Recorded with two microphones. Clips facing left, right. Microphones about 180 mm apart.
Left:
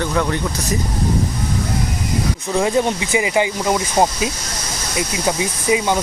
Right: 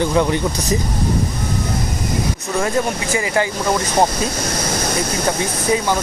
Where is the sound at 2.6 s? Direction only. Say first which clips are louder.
Left 2 dB; 15° left (ahead or behind).